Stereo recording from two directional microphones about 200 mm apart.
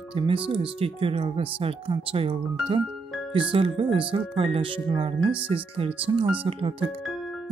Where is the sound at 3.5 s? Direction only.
25° right (ahead or behind).